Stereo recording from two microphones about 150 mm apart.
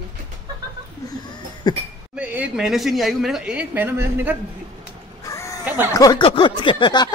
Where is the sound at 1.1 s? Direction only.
30° left (ahead or behind).